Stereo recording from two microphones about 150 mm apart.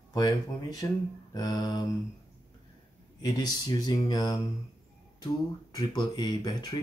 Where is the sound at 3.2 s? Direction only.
25° left (ahead or behind).